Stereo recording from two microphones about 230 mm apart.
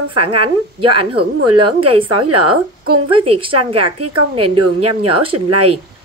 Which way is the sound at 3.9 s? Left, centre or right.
Right.